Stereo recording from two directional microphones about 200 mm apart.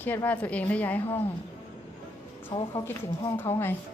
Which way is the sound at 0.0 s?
10° left (ahead or behind).